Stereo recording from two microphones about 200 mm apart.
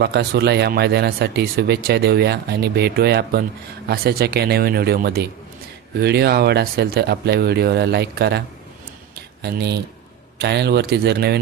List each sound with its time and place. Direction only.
0.0 s speech: 55° right (ahead or behind)
9.4 s speech: 55° right (ahead or behind)